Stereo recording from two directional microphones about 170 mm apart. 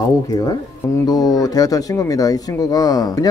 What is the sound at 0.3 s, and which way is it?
Speech, 20° left (ahead or behind).